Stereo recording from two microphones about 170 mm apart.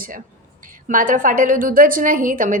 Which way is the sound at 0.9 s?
50° right (ahead or behind).